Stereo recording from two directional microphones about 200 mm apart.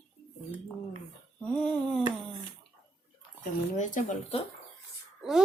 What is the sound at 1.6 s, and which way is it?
Speech, 5° left (ahead or behind).